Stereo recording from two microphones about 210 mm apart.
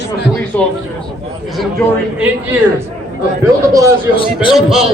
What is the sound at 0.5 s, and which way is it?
Speech, 10° left (ahead or behind).